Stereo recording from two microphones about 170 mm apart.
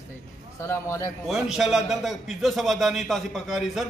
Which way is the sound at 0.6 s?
15° left (ahead or behind).